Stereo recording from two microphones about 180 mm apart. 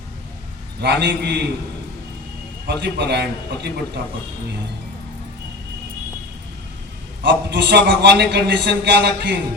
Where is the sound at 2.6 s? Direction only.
65° right (ahead or behind).